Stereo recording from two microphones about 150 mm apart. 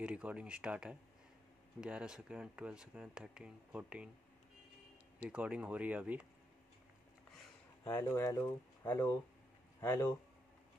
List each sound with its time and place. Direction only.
0.0 s speech: 10° right (ahead or behind)
5.3 s speech: 10° right (ahead or behind)
7.8 s a man's voice: 15° left (ahead or behind)